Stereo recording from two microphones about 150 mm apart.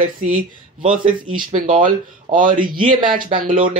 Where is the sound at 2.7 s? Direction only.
30° right (ahead or behind).